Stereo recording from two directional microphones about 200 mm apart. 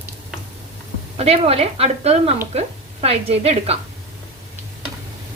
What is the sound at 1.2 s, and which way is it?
A woman's voice, 30° right (ahead or behind).